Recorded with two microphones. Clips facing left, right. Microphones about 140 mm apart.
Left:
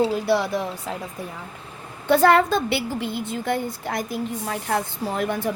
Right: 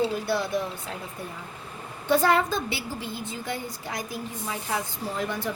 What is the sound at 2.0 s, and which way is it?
A woman's voice, 65° left (ahead or behind).